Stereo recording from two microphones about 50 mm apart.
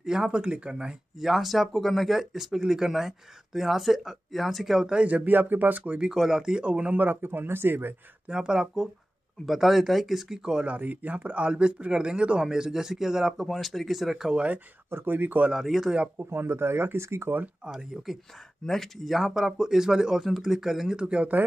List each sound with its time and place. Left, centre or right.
0.0 s speech: centre
1.2 s speech: centre
5.0 s speech: right
5.9 s speech: centre; by 7.9 s right
8.3 s speech: centre
9.5 s speech: centre
10.6 s speech: right; by 14.3 s centre
14.3 s speech: right
14.9 s speech: right
15.5 s speech: centre
16.2 s speech: right
17.6 s speech: centre
18.7 s speech: centre